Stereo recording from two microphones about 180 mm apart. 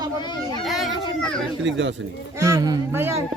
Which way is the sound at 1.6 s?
90° right.